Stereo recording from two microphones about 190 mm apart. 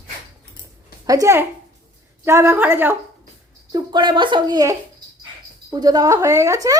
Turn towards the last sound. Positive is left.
turn(degrees=-15)  # may be behind; listen again after turning